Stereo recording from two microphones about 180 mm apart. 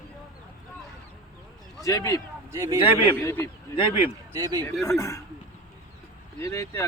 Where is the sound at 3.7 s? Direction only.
30° left (ahead or behind).